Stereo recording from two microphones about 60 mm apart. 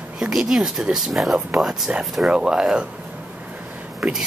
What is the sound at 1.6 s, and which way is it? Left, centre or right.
Speech, centre.